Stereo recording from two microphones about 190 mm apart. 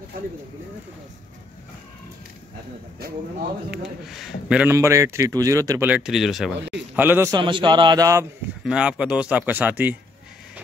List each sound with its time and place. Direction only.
3.0 s speech: 55° right (ahead or behind)
3.7 s a man's voice: 5° right (ahead or behind)
7.3 s speech: 25° right (ahead or behind)
8.6 s speech: 5° right (ahead or behind)